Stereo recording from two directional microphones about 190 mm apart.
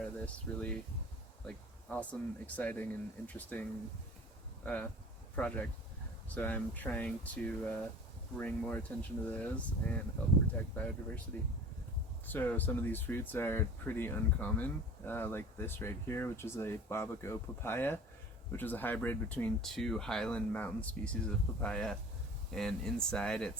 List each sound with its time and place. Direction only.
0.0 s speech: 5° left (ahead or behind)
11.3 s speech: 10° left (ahead or behind)